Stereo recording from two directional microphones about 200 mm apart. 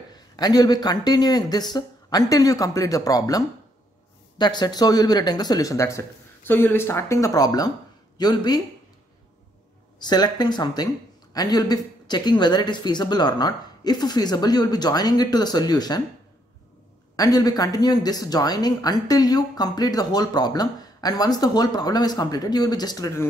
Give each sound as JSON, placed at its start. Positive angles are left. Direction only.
{"t": 0.1, "sound": "speech", "side_deg": 20}
{"t": 9.9, "sound": "speech", "side_deg": 20}
{"t": 17.2, "sound": "speech", "side_deg": 20}